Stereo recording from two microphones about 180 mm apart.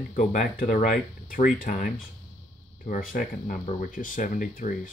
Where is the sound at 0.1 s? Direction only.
45° left (ahead or behind).